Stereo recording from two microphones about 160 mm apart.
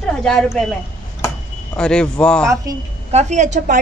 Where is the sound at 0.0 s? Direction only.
5° left (ahead or behind).